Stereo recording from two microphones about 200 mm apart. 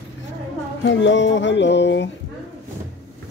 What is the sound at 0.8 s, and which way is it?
Speech, 65° left (ahead or behind).